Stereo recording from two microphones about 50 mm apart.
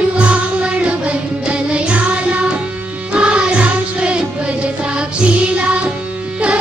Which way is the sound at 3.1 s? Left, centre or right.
Right.